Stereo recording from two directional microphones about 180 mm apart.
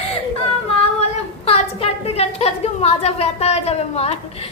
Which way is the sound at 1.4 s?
35° left (ahead or behind).